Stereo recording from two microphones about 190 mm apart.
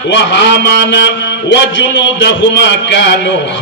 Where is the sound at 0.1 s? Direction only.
70° left (ahead or behind).